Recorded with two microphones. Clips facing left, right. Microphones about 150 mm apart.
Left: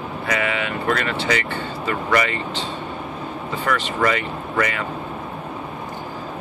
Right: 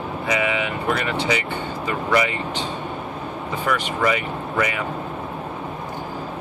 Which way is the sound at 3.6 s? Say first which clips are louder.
Left 1 dB; 15° right (ahead or behind).